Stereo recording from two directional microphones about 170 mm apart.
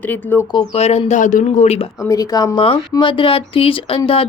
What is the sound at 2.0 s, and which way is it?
Speech, 20° left (ahead or behind).